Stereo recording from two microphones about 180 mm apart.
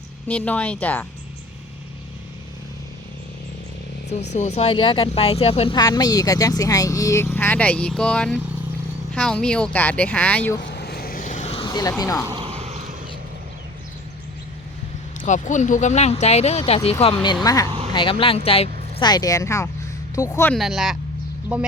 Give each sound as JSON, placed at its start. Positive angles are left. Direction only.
{"t": 0.3, "sound": "speech", "side_deg": 10}
{"t": 4.4, "sound": "speech", "side_deg": 35}
{"t": 10.6, "sound": "vehicle", "side_deg": 70}
{"t": 11.5, "sound": "speech", "side_deg": 25}
{"t": 12.3, "sound": "vehicle", "side_deg": -30}
{"t": 15.2, "sound": "speech", "side_deg": 45}
{"t": 17.4, "sound": "speech", "side_deg": 20}
{"t": 18.9, "sound": "speech", "side_deg": 25}
{"t": 20.5, "sound": "speech", "side_deg": 0}